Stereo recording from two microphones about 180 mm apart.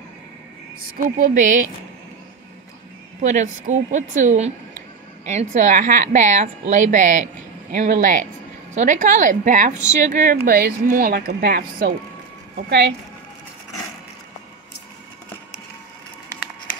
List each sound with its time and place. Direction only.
0.7 s a woman's voice: 50° right (ahead or behind)
3.2 s a woman's voice: 40° right (ahead or behind); by 12.9 s 70° right (ahead or behind)